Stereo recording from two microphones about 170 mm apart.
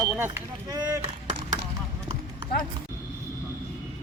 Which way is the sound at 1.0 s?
30° right (ahead or behind).